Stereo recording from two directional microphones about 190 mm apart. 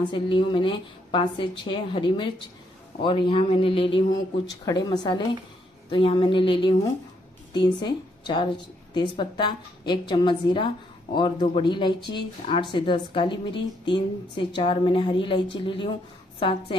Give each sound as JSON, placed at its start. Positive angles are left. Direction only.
{"t": 0.0, "sound": "speech", "side_deg": 25}